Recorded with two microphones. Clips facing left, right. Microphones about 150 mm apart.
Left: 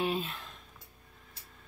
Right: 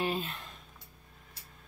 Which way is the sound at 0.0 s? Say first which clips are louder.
Left 1 dB; centre (ahead or behind).